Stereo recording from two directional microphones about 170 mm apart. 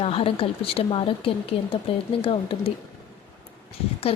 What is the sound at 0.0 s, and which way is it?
Speech, 35° left (ahead or behind).